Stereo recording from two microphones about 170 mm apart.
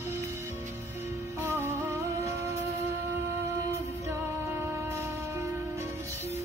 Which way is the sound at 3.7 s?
15° right (ahead or behind).